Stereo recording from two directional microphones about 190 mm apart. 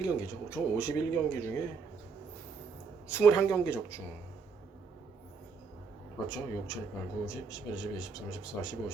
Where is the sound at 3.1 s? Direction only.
15° left (ahead or behind).